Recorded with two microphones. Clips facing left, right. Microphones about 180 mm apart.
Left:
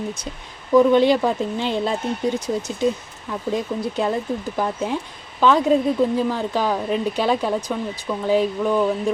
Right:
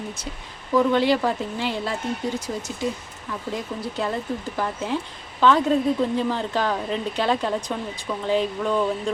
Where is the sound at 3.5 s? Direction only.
20° left (ahead or behind).